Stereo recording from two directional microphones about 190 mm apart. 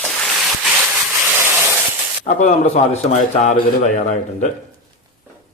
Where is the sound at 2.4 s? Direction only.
35° left (ahead or behind).